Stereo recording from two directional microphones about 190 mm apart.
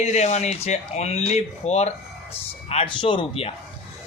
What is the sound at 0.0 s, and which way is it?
A man's voice, 35° left (ahead or behind).